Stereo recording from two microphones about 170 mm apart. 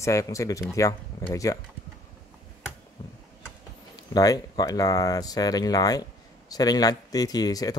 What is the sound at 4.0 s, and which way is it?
Speech, 20° left (ahead or behind).